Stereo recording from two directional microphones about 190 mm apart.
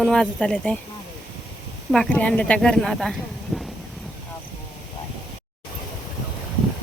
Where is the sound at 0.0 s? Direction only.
5° left (ahead or behind).